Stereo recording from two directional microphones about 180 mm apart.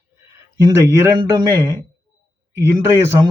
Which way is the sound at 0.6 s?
20° right (ahead or behind).